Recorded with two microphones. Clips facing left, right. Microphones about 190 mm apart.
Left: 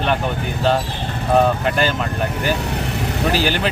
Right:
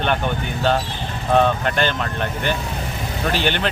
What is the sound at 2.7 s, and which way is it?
Vehicle, 70° left (ahead or behind).